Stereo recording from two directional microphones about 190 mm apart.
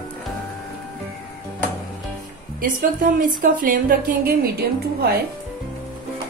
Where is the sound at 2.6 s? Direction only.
45° right (ahead or behind).